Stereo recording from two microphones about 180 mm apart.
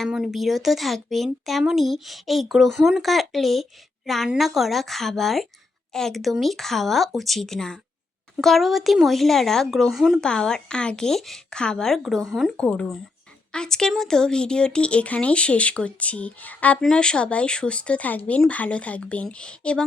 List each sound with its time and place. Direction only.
0.0 s speech: centre (ahead or behind)